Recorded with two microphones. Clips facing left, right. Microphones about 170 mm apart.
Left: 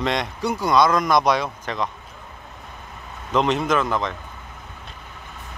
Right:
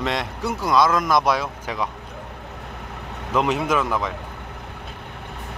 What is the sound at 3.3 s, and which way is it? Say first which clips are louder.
Speech: left 1 dB; 5° right (ahead or behind).